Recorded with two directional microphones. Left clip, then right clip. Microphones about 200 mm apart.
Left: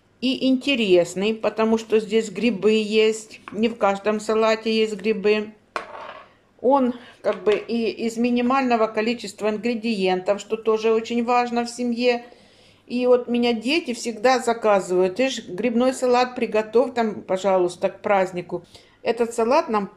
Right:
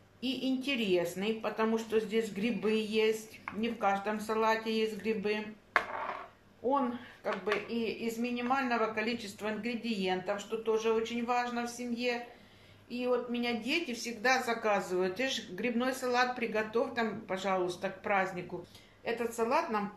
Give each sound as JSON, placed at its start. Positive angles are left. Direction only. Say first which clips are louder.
{"t": 0.2, "sound": "speech", "louder": "left 13 dB", "side_deg": 50}
{"t": 6.7, "sound": "speech", "louder": "left 12 dB", "side_deg": 50}